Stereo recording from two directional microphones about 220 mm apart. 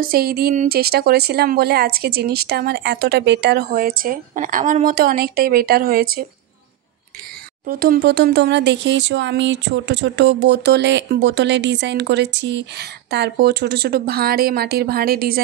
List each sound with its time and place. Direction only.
0.0 s speech: 45° right (ahead or behind)
7.6 s speech: 40° right (ahead or behind)